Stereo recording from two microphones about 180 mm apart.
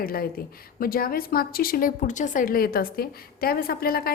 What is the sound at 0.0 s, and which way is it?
A woman's voice, 55° left (ahead or behind).